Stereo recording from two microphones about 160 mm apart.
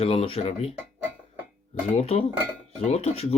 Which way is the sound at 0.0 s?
40° left (ahead or behind).